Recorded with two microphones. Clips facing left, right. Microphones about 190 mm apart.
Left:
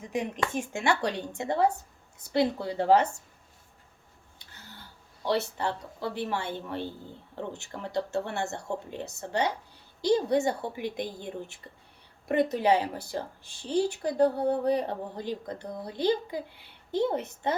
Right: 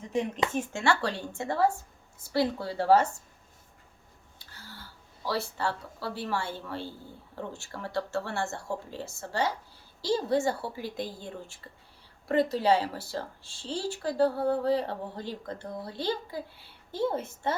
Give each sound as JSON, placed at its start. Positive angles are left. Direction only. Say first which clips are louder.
{"t": 0.0, "sound": "a sound", "louder": "right 2 dB", "side_deg": 15}
{"t": 0.5, "sound": "speech", "louder": "left 1 dB", "side_deg": 15}
{"t": 4.4, "sound": "a woman's voice", "louder": "right 2 dB", "side_deg": 20}